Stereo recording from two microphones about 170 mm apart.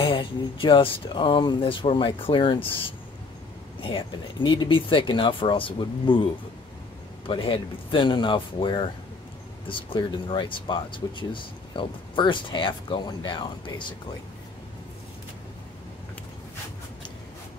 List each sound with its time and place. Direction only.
0.0 s speech: 30° left (ahead or behind)
3.8 s speech: 30° left (ahead or behind)
7.2 s speech: 30° left (ahead or behind)